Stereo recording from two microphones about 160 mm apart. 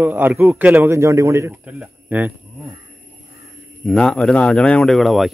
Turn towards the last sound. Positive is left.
turn(degrees=0)  # may be behind; listen again after turning